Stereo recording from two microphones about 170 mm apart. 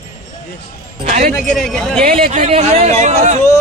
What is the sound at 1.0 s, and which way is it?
Speech, 45° right (ahead or behind).